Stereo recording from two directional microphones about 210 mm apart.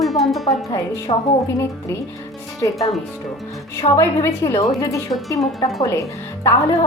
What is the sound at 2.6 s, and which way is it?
A woman's voice, 15° left (ahead or behind).